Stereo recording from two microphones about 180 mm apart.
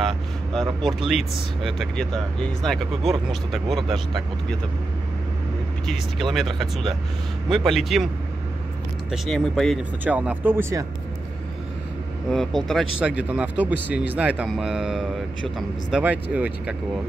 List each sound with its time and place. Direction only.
0.6 s speech: centre (ahead or behind)
5.9 s speech: centre (ahead or behind)
9.1 s speech: centre (ahead or behind)
10.0 s speech: 10° right (ahead or behind)
12.3 s speech: 5° left (ahead or behind)